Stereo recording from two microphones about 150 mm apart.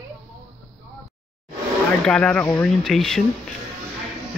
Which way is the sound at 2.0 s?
5° left (ahead or behind).